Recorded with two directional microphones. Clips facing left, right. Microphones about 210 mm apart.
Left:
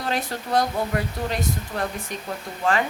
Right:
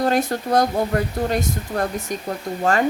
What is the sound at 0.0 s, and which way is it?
Speech, 45° right (ahead or behind).